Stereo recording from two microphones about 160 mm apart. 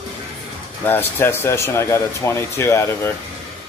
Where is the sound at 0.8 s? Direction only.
15° left (ahead or behind).